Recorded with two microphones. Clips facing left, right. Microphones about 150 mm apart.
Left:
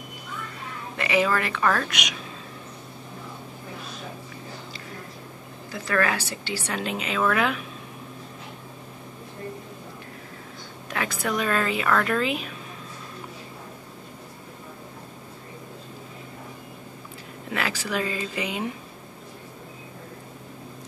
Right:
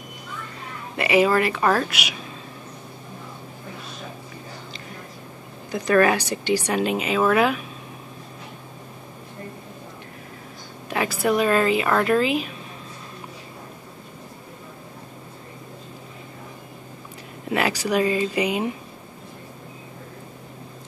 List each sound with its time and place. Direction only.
0.9 s speech: 10° right (ahead or behind)
1.9 s speech: 5° right (ahead or behind)
5.7 s speech: 20° right (ahead or behind)
10.9 s speech: 10° right (ahead or behind)
17.5 s speech: 15° right (ahead or behind)